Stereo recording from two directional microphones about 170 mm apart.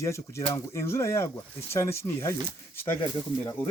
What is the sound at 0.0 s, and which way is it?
Speech, 15° left (ahead or behind).